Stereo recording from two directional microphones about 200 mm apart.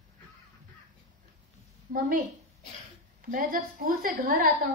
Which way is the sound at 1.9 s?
45° right (ahead or behind).